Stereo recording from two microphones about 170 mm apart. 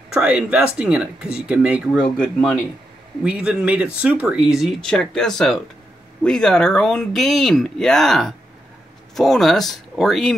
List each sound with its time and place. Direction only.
0.1 s speech: 5° right (ahead or behind)
3.3 s speech: 5° right (ahead or behind)